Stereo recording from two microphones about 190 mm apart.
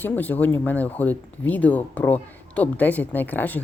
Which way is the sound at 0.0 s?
10° left (ahead or behind).